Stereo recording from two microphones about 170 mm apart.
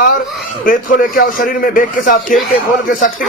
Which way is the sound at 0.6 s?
55° left (ahead or behind).